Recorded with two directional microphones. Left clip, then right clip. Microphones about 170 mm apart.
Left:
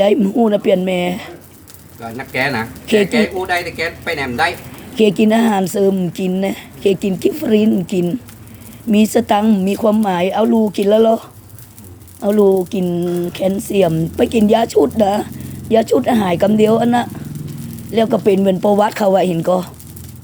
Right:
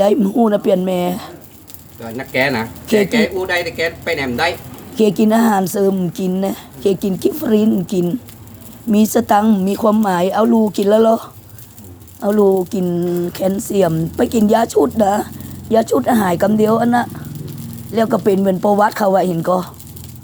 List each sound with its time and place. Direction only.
0.0 s a woman's voice: centre (ahead or behind)
2.0 s speech: 15° left (ahead or behind)
2.8 s speech: centre (ahead or behind)
3.1 s speech: 15° left (ahead or behind)
4.9 s a woman's voice: centre (ahead or behind)